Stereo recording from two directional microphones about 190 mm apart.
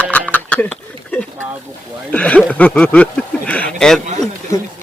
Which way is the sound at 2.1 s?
5° left (ahead or behind).